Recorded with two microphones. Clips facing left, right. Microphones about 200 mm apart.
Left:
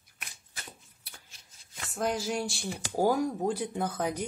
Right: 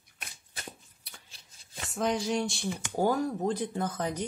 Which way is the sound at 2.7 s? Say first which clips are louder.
Right 2 dB; 35° left (ahead or behind).